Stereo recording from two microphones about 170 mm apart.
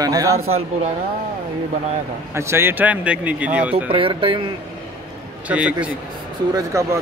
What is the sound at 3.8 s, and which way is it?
Speech, 30° right (ahead or behind).